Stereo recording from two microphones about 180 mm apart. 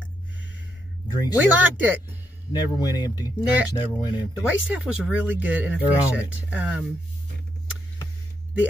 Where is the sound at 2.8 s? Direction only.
20° left (ahead or behind).